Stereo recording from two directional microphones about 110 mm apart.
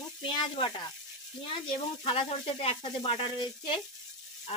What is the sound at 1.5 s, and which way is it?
Sizzle, 55° left (ahead or behind).